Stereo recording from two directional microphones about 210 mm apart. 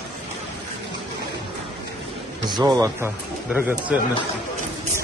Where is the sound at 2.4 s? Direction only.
15° right (ahead or behind).